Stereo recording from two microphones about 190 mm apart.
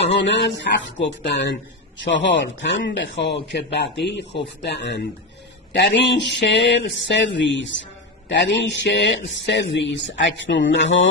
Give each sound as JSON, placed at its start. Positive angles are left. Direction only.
{"t": 0.0, "sound": "speech", "side_deg": 70}